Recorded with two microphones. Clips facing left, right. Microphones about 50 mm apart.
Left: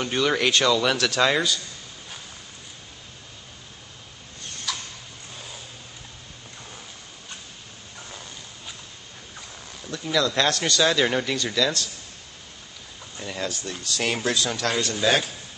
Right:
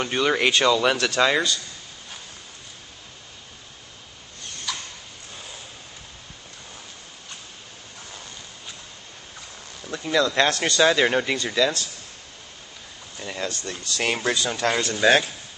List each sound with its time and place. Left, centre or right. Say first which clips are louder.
0.0 s a man's voice: right 1 dB; centre
4.7 s a sound: even; centre
10.0 s speech: right 2 dB; centre
13.2 s a man's voice: even; centre
14.6 s a man's voice: right 3 dB; centre